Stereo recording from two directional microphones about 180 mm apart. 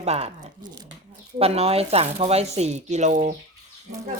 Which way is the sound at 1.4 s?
35° right (ahead or behind).